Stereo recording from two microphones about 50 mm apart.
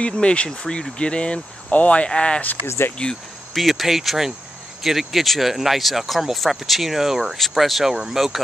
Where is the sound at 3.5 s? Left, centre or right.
Centre.